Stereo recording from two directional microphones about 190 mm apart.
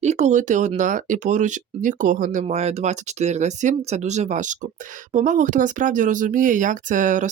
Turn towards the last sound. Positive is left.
turn(degrees=-40)  # may be behind; listen again after turning